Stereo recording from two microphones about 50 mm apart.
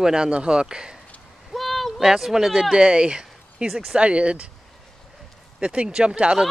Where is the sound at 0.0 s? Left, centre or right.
Centre.